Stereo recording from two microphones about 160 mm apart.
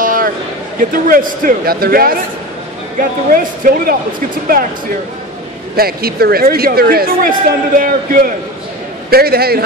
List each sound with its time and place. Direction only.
0.0 s a sound: 60° right (ahead or behind)
0.7 s speech: 60° right (ahead or behind)
5.8 s speech: 70° right (ahead or behind)
9.1 s speech: 75° right (ahead or behind)